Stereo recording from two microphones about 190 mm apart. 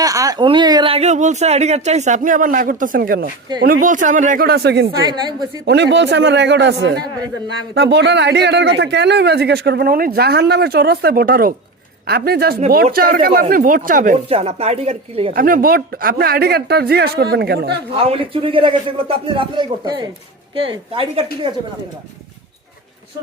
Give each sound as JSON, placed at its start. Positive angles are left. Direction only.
{"t": 0.0, "sound": "a woman's voice", "side_deg": -20}
{"t": 4.9, "sound": "a man's voice", "side_deg": -20}
{"t": 5.6, "sound": "a man's voice", "side_deg": -65}
{"t": 14.3, "sound": "a woman's voice", "side_deg": -30}
{"t": 15.3, "sound": "speech", "side_deg": -45}
{"t": 17.9, "sound": "a man's voice", "side_deg": -30}